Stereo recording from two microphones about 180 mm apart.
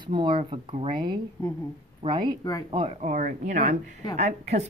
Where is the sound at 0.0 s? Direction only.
25° right (ahead or behind).